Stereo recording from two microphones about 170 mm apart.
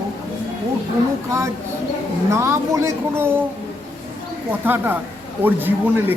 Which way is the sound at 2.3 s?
15° right (ahead or behind).